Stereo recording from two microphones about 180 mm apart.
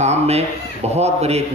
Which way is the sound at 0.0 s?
35° right (ahead or behind).